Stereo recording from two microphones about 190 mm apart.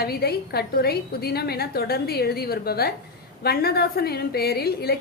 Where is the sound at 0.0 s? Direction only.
55° left (ahead or behind).